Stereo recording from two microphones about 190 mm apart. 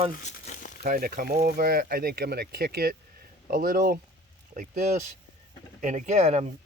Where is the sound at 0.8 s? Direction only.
45° right (ahead or behind).